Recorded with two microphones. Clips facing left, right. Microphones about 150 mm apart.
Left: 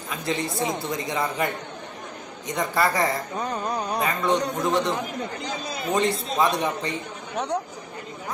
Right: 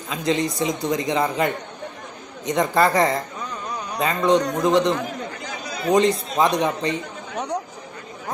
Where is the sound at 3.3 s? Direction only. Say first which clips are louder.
Left 4 dB; 50° left (ahead or behind).